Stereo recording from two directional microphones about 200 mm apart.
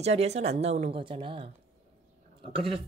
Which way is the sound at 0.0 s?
30° right (ahead or behind).